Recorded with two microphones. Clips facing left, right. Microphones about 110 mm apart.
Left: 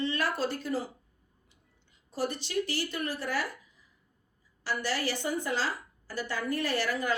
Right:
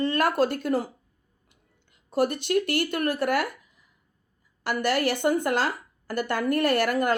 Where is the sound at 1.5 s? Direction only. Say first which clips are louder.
Right 6 dB; 60° right (ahead or behind).